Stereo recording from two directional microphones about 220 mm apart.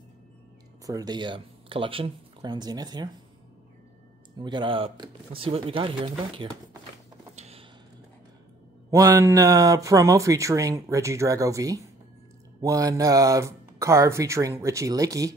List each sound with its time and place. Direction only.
0.8 s speech: 15° right (ahead or behind)
4.4 s speech: 20° right (ahead or behind)
7.3 s a sound: 30° right (ahead or behind)
8.9 s speech: 15° right (ahead or behind)